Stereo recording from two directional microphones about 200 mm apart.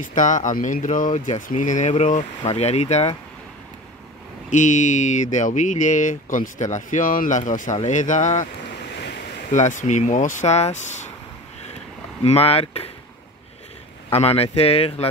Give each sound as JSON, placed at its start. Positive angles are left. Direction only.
{"t": 0.0, "sound": "speech", "side_deg": 40}
{"t": 4.5, "sound": "speech", "side_deg": 40}
{"t": 9.5, "sound": "speech", "side_deg": 40}
{"t": 12.2, "sound": "speech", "side_deg": 30}
{"t": 14.1, "sound": "speech", "side_deg": 30}